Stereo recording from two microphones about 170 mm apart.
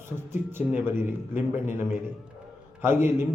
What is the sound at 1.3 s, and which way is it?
Speech, 45° left (ahead or behind).